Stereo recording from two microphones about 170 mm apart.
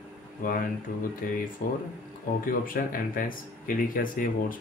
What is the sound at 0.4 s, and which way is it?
Speech, 55° left (ahead or behind).